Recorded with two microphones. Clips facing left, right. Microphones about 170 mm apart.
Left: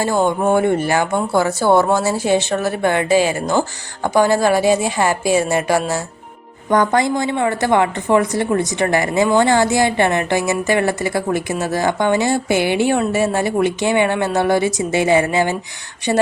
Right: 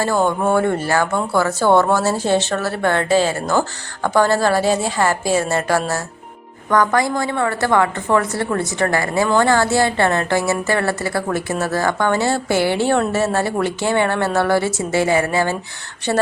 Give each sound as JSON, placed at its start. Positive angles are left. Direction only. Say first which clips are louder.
{"t": 0.0, "sound": "speech", "louder": "left 1 dB", "side_deg": 15}